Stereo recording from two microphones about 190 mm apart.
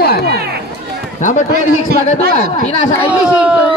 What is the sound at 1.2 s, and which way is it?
Speech, 40° left (ahead or behind).